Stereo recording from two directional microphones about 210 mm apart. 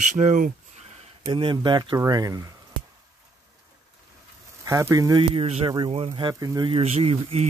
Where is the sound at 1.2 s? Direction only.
20° right (ahead or behind).